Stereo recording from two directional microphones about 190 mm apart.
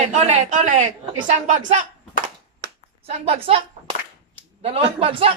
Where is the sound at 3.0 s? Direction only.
30° right (ahead or behind).